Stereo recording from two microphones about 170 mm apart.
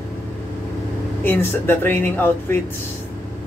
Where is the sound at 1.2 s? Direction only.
10° left (ahead or behind).